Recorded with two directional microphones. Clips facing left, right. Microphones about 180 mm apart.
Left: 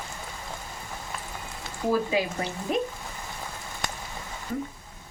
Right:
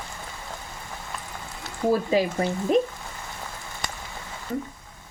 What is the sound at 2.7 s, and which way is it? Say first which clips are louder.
Speech: right 6 dB; 35° right (ahead or behind).